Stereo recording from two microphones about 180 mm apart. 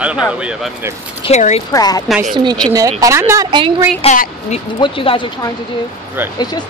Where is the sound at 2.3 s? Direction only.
25° right (ahead or behind).